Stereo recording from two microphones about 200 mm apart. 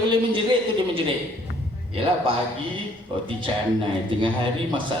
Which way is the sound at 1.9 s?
25° right (ahead or behind).